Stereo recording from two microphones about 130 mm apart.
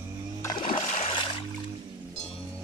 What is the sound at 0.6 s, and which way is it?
Music, 75° left (ahead or behind).